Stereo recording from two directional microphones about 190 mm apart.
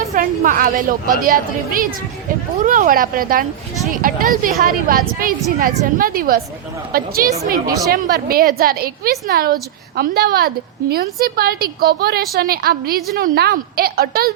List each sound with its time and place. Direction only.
0.1 s a woman's voice: 45° right (ahead or behind)